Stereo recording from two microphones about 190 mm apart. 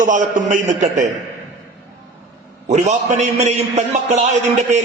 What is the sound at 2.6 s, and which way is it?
A man's voice, 35° right (ahead or behind).